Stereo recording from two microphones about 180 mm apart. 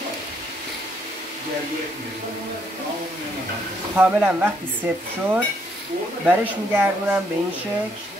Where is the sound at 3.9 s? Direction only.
10° right (ahead or behind).